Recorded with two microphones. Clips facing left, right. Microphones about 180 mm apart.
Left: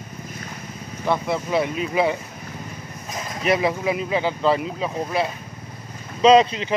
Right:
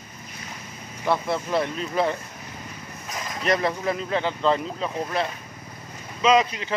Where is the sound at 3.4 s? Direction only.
5° left (ahead or behind).